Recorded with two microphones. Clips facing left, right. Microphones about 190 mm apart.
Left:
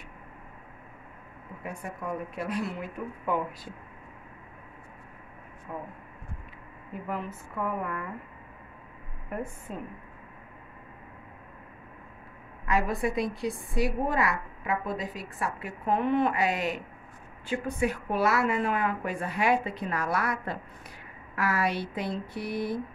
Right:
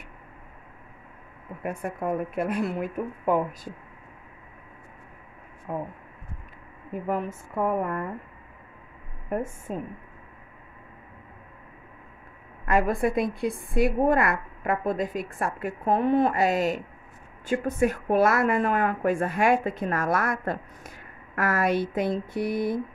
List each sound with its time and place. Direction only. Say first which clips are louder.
1.6 s speech: right 7 dB; 55° right (ahead or behind)
5.7 s speech: right 7 dB; 55° right (ahead or behind)
7.1 s a woman's voice: right 6 dB; 45° right (ahead or behind)
9.3 s a woman's voice: right 6 dB; 45° right (ahead or behind)
12.6 s a woman's voice: right 4 dB; 50° right (ahead or behind)